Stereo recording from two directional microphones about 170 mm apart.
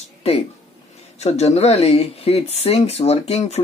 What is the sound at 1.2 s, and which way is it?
Speech, 40° left (ahead or behind).